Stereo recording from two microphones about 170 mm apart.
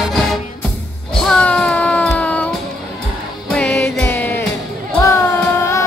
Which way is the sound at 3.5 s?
10° left (ahead or behind).